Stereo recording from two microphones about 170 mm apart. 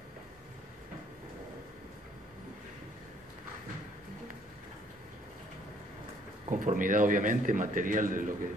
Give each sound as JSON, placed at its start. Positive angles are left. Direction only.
{"t": 6.5, "sound": "a man's voice", "side_deg": -55}